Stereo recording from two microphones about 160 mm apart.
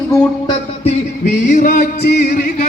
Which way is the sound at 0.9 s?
50° left (ahead or behind).